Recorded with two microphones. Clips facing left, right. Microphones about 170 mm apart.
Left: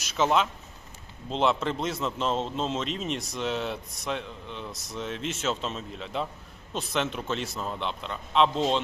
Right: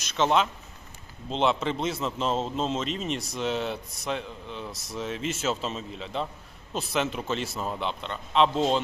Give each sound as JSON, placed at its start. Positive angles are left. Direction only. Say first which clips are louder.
{"t": 0.0, "sound": "a man's voice", "louder": "right 1 dB", "side_deg": 5}